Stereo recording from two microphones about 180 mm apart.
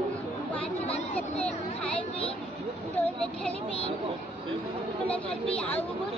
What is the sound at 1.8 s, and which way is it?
Children playing, 5° left (ahead or behind).